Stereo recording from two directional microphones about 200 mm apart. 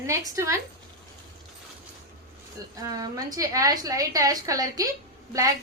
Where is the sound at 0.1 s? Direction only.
15° right (ahead or behind).